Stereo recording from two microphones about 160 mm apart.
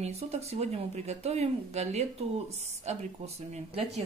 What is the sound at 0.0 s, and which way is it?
Speech, 40° right (ahead or behind).